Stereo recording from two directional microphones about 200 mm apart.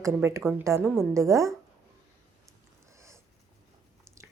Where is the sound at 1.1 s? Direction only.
15° right (ahead or behind).